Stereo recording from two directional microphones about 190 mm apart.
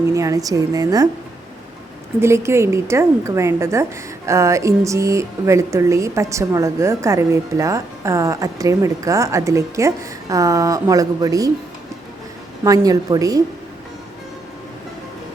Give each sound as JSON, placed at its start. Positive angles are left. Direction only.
{"t": 0.1, "sound": "speech", "side_deg": -15}
{"t": 2.2, "sound": "speech", "side_deg": -15}
{"t": 12.6, "sound": "a woman's voice", "side_deg": -20}